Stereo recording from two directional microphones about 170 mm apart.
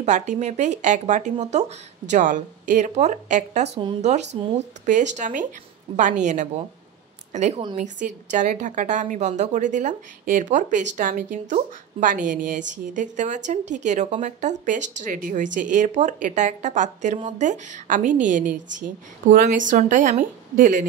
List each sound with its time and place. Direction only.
0.0 s a woman's voice: 45° right (ahead or behind)
4.8 s a woman's voice: 45° right (ahead or behind)